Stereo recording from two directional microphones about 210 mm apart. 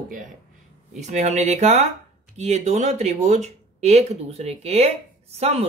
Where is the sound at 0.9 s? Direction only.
35° right (ahead or behind).